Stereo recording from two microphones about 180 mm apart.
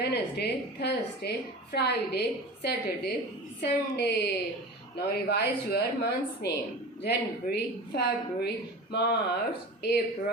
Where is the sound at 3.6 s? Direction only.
70° left (ahead or behind).